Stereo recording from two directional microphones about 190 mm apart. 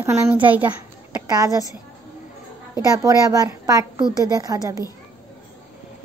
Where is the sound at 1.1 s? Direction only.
20° right (ahead or behind).